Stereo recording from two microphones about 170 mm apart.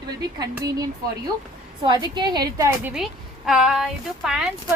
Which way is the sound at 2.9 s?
Centre (ahead or behind).